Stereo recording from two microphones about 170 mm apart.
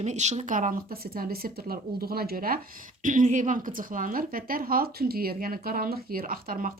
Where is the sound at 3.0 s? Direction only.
50° right (ahead or behind).